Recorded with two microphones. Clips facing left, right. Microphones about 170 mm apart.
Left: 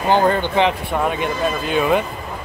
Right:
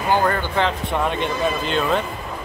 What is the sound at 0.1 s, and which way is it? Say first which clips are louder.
Speech: left 4 dB; 20° left (ahead or behind).